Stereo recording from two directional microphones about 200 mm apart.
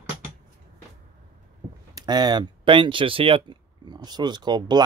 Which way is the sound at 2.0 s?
20° right (ahead or behind).